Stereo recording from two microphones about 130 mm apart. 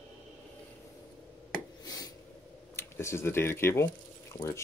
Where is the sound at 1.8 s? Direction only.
30° left (ahead or behind).